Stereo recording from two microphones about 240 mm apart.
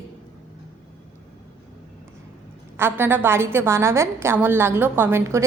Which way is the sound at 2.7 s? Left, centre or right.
Centre.